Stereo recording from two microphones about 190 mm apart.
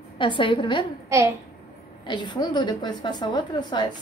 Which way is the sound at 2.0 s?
25° left (ahead or behind).